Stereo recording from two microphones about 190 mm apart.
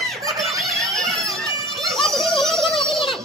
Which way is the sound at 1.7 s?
Centre (ahead or behind).